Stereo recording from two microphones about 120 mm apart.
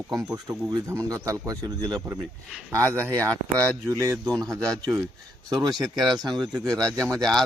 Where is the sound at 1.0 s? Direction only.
25° right (ahead or behind).